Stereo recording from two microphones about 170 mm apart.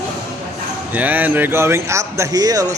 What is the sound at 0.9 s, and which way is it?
A man's voice, 10° right (ahead or behind).